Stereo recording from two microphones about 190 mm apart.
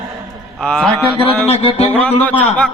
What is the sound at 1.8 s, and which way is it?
Speech, 10° left (ahead or behind).